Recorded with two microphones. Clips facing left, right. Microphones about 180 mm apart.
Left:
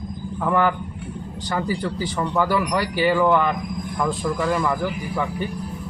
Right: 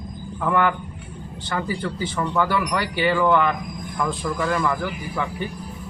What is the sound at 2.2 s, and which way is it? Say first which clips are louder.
A man's voice: left 1 dB; 15° left (ahead or behind).